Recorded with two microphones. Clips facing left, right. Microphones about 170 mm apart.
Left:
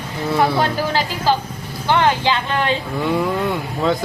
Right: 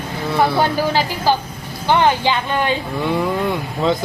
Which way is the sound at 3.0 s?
Centre (ahead or behind).